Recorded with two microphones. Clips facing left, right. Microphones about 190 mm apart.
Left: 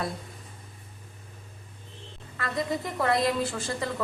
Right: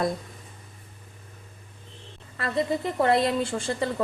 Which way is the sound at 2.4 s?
30° right (ahead or behind).